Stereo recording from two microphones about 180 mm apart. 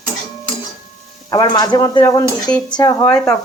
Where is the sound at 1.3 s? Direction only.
20° left (ahead or behind).